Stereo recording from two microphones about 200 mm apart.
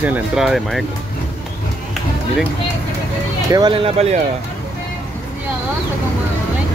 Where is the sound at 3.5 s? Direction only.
25° right (ahead or behind).